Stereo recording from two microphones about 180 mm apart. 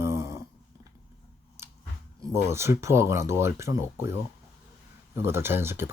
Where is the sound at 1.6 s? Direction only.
15° right (ahead or behind).